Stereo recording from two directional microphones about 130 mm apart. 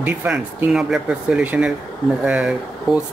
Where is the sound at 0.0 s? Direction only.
15° right (ahead or behind).